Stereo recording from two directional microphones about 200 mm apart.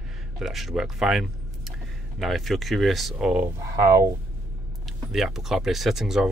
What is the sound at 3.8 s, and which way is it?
Speech, 15° right (ahead or behind).